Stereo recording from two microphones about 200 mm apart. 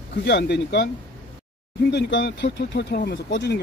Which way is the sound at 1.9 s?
60° left (ahead or behind).